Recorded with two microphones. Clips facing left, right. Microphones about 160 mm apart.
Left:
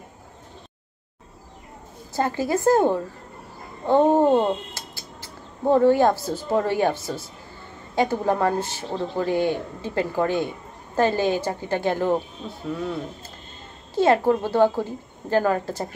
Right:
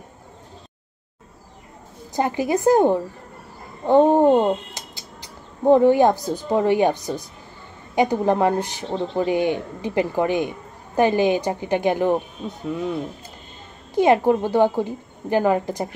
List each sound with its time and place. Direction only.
2.1 s speech: 15° right (ahead or behind)
13.9 s speech: 15° right (ahead or behind)